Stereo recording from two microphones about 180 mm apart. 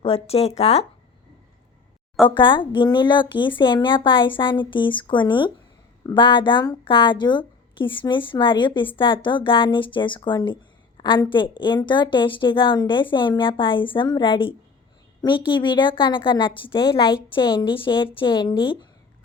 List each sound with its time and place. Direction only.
0.0 s speech: 35° left (ahead or behind)
2.2 s a woman's voice: 25° left (ahead or behind)